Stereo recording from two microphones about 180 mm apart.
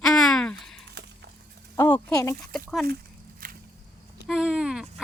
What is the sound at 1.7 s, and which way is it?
Speech, 15° left (ahead or behind).